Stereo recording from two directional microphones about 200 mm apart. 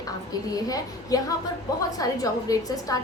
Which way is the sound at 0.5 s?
20° left (ahead or behind).